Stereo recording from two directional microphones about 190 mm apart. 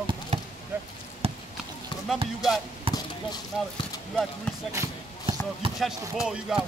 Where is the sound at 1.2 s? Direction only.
30° right (ahead or behind).